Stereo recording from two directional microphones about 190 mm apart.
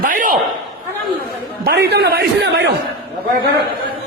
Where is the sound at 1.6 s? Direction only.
55° right (ahead or behind).